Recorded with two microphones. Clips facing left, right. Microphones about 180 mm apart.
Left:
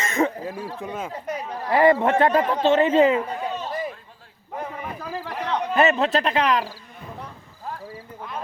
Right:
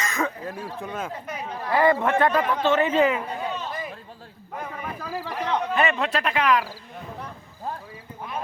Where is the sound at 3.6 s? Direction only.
35° left (ahead or behind).